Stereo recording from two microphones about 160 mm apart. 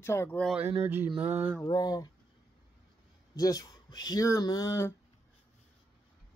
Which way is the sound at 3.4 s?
25° left (ahead or behind).